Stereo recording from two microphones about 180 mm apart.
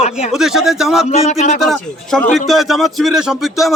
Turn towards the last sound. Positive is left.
turn(degrees=0)  # may be behind; listen again after turning